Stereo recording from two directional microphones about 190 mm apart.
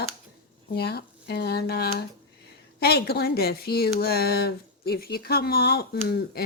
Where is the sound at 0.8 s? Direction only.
60° left (ahead or behind).